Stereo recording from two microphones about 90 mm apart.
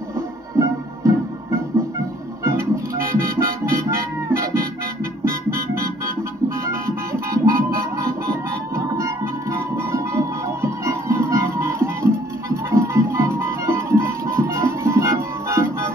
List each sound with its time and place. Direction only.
0.6 s music: 35° right (ahead or behind)